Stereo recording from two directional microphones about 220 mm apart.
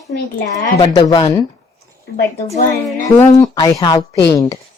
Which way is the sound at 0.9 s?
15° left (ahead or behind).